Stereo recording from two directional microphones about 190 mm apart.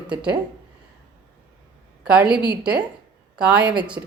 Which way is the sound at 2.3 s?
5° right (ahead or behind).